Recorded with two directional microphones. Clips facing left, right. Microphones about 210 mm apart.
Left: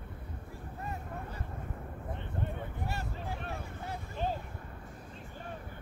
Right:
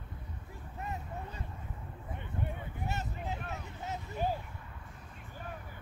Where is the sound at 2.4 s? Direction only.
20° right (ahead or behind).